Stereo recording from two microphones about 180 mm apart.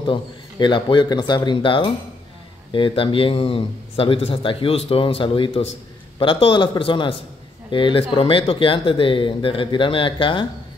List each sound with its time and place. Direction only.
0.0 s speech: 25° left (ahead or behind)